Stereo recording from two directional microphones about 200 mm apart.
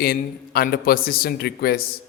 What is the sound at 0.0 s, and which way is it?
A man's voice, 50° left (ahead or behind).